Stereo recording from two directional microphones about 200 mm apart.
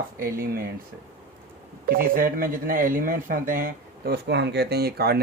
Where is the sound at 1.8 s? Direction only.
45° right (ahead or behind).